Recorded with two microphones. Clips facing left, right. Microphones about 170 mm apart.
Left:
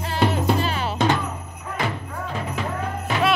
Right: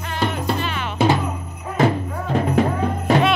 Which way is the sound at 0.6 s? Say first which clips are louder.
Left 1 dB; 35° left (ahead or behind).